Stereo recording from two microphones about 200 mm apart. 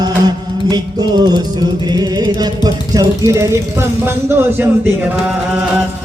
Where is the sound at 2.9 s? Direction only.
15° right (ahead or behind).